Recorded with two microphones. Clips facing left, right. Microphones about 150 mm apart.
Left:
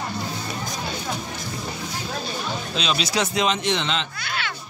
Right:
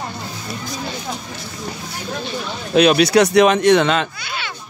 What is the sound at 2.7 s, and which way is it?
Speech, 60° right (ahead or behind).